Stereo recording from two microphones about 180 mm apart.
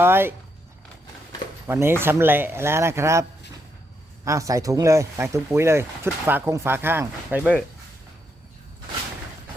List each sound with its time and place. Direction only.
0.0 s speech: 10° right (ahead or behind)
1.6 s speech: 15° right (ahead or behind)
4.3 s speech: 20° right (ahead or behind)